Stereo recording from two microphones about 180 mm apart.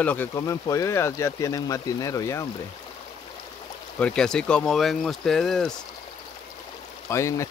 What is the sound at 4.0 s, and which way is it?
Speech, 5° left (ahead or behind).